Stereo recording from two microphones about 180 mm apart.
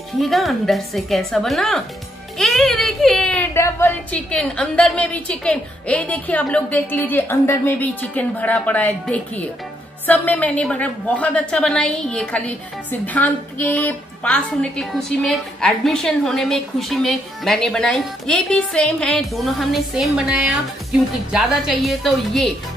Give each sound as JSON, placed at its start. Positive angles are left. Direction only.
{"t": 0.2, "sound": "a woman's voice", "side_deg": 0}